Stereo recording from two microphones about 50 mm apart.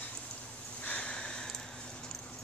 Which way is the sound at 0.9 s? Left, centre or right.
Centre.